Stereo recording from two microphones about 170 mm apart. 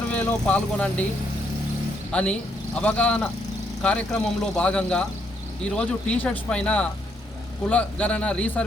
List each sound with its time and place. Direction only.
0.1 s speech: 10° left (ahead or behind)
2.1 s speech: 5° left (ahead or behind)